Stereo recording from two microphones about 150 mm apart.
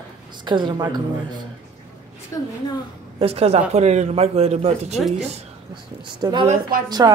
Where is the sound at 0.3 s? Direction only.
30° right (ahead or behind).